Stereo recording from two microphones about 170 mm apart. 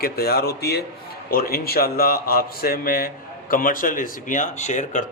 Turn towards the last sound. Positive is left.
turn(degrees=45)  # may be behind; listen again after turning